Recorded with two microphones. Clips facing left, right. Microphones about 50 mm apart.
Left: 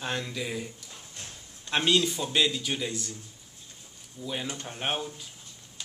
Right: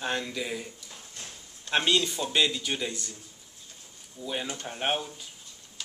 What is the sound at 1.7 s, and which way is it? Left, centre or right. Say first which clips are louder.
A man's voice: left 1 dB; centre.